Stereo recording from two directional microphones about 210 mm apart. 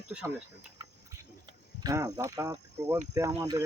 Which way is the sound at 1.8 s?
15° right (ahead or behind).